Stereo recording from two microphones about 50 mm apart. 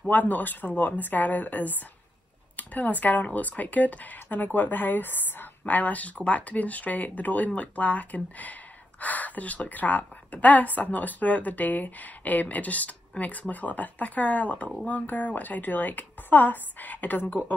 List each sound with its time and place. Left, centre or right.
0.1 s speech: left